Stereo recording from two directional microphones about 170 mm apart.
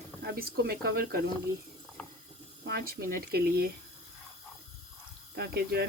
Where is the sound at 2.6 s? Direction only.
65° right (ahead or behind).